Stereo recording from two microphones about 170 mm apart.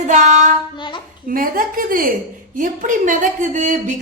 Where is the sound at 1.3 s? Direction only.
55° right (ahead or behind).